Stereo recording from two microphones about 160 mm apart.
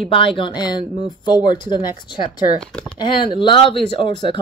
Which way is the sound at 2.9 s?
30° left (ahead or behind).